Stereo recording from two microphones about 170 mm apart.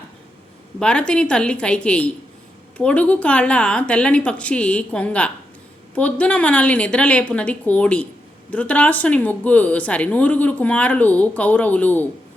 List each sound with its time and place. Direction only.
0.8 s a woman's voice: 5° left (ahead or behind)